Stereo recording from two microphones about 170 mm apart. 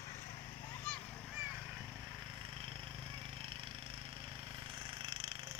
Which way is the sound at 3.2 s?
30° right (ahead or behind).